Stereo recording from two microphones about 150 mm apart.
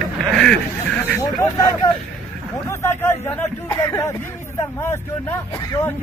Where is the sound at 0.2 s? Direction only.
Centre (ahead or behind).